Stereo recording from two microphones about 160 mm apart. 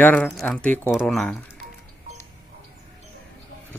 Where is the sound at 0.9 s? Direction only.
Centre (ahead or behind).